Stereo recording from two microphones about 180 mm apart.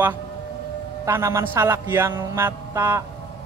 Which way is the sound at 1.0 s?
15° right (ahead or behind).